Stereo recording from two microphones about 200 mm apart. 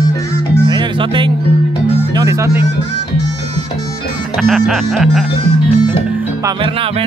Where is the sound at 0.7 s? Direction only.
25° right (ahead or behind).